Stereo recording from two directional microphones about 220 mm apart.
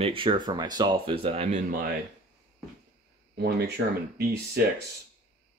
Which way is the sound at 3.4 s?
50° right (ahead or behind).